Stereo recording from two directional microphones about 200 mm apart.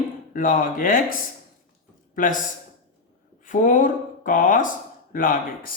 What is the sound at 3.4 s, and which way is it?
Speech, 40° left (ahead or behind).